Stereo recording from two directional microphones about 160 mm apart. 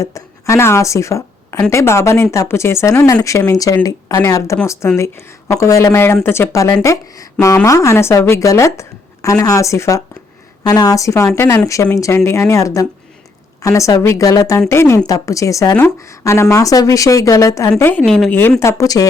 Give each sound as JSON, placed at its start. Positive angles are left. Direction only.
{"t": 0.0, "sound": "a woman's voice", "side_deg": 20}
{"t": 18.0, "sound": "speech", "side_deg": 0}
{"t": 18.6, "sound": "a woman's voice", "side_deg": 20}